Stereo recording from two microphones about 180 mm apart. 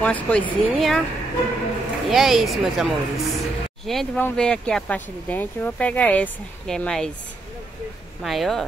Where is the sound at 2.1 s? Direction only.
Centre (ahead or behind).